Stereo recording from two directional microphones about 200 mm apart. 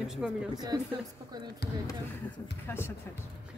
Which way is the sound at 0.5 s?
20° right (ahead or behind).